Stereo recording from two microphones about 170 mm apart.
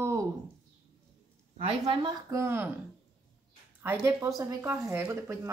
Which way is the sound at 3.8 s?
15° right (ahead or behind).